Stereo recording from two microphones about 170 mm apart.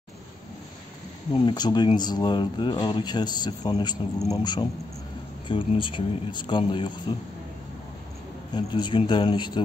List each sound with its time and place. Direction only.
1.4 s speech: 25° left (ahead or behind)
8.5 s speech: 25° left (ahead or behind)